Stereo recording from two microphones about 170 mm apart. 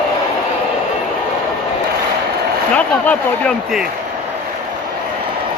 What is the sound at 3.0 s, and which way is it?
Speech, 5° left (ahead or behind).